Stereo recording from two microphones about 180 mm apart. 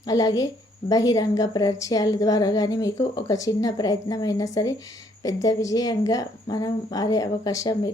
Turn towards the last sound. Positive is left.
turn(degrees=20)  # may be behind; listen again after turning